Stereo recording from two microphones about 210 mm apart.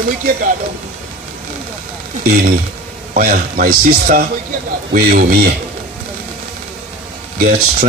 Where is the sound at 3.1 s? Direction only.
45° right (ahead or behind).